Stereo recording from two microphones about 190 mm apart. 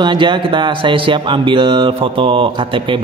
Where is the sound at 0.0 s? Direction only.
25° right (ahead or behind).